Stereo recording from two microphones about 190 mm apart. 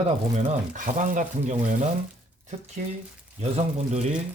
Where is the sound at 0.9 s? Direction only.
40° right (ahead or behind).